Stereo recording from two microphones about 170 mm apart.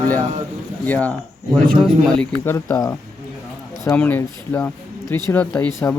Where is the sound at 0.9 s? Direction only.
10° left (ahead or behind).